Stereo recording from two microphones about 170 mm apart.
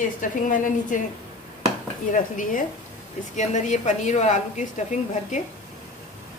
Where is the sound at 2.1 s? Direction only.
50° left (ahead or behind).